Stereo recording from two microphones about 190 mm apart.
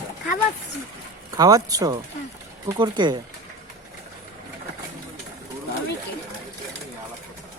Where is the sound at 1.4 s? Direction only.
20° right (ahead or behind).